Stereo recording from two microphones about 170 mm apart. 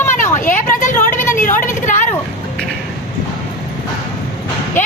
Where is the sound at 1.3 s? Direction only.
50° left (ahead or behind).